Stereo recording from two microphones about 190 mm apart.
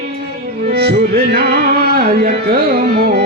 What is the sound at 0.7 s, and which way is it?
Music, 55° right (ahead or behind).